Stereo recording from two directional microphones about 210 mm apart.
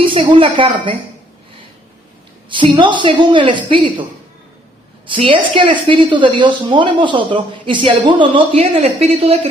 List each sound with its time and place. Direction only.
0.1 s a woman's voice: 25° right (ahead or behind)
2.5 s a woman's voice: 25° right (ahead or behind)
5.0 s a woman's voice: 25° right (ahead or behind)